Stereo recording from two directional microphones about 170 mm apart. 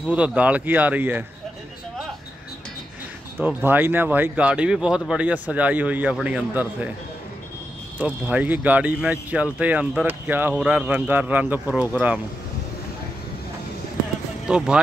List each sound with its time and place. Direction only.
0.0 s speech: 5° right (ahead or behind)
3.3 s speech: 10° right (ahead or behind)
8.0 s speech: 10° right (ahead or behind)
14.5 s speech: 5° right (ahead or behind)